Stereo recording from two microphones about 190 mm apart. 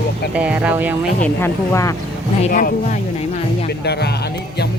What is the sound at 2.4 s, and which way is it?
Speech, 40° left (ahead or behind).